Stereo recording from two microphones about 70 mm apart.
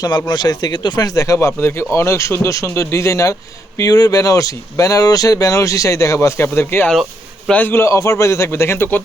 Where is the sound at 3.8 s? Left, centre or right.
Left.